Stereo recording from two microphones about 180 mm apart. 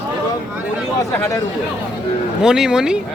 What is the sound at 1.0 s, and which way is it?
Speech, 15° left (ahead or behind).